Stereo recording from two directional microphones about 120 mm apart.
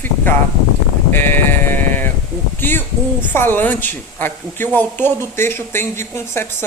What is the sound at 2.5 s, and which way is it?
Speech, 15° left (ahead or behind).